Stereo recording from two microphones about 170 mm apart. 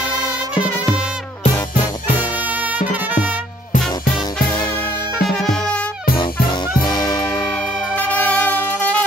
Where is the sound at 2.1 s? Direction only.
10° right (ahead or behind).